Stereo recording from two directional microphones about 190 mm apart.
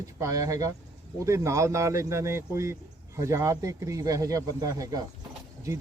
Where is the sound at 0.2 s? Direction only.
15° right (ahead or behind).